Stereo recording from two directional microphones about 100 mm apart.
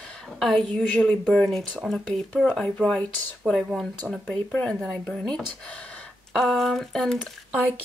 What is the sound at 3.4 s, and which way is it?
Speech, centre (ahead or behind).